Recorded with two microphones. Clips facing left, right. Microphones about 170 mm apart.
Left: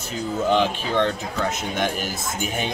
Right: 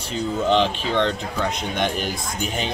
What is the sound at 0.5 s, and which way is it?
Speech, 10° left (ahead or behind).